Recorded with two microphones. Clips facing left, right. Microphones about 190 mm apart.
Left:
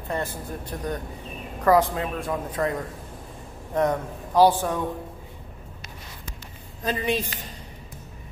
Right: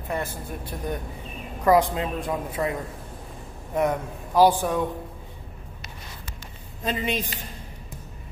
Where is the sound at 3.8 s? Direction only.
10° right (ahead or behind).